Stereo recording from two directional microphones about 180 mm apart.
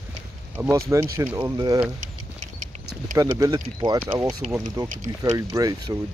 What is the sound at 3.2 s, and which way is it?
Speech, 20° right (ahead or behind).